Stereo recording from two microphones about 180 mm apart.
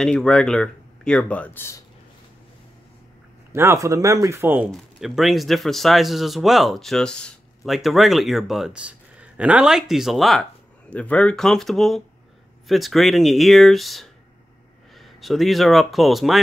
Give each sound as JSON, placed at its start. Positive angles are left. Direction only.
{"t": 0.0, "sound": "speech", "side_deg": 5}
{"t": 3.5, "sound": "speech", "side_deg": -15}
{"t": 4.6, "sound": "speech", "side_deg": 0}